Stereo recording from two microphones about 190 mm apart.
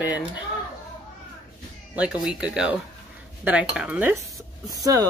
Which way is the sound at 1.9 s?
5° right (ahead or behind).